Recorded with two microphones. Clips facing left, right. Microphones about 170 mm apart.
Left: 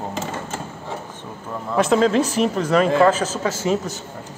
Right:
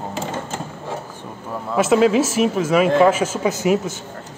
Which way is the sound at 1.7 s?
5° right (ahead or behind).